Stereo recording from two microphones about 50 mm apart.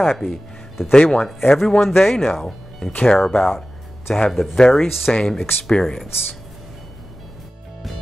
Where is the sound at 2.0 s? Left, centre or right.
Centre.